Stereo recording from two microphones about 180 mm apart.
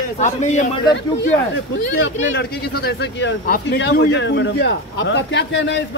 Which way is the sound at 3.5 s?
65° left (ahead or behind).